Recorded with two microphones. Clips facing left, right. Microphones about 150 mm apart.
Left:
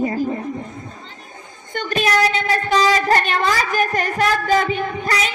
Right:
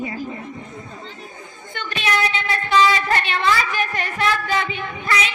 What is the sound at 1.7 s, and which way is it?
A woman's voice, 45° left (ahead or behind).